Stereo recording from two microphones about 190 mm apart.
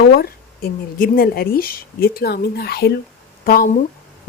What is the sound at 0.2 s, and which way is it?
A woman's voice, 50° left (ahead or behind).